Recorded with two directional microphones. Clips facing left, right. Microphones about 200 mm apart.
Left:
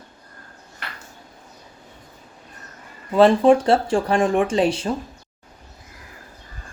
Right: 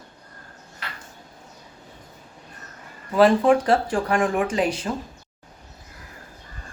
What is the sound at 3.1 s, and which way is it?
Speech, 25° left (ahead or behind).